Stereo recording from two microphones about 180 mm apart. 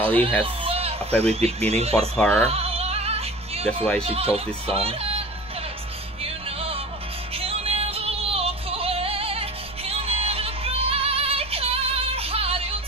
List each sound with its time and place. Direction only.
0.0 s speech: 30° right (ahead or behind)
0.4 s baby cry: 35° right (ahead or behind)
1.7 s speech: 35° right (ahead or behind)
2.0 s speech: 5° left (ahead or behind)
2.5 s music: 35° right (ahead or behind)
4.0 s speech: 35° right (ahead or behind)
6.2 s music: 30° right (ahead or behind)